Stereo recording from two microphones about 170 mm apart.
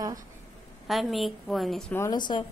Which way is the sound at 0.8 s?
Centre (ahead or behind).